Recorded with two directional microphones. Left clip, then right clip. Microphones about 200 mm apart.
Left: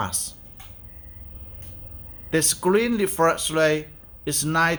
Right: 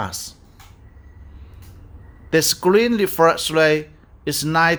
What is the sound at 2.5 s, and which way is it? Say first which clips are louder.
Speech: right 4 dB; 20° right (ahead or behind).